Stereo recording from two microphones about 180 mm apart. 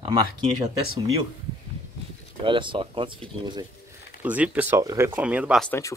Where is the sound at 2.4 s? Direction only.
25° right (ahead or behind).